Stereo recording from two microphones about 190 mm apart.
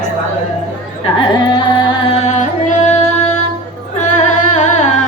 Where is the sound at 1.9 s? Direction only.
30° left (ahead or behind).